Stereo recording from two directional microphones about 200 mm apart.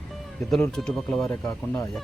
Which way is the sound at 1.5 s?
15° left (ahead or behind).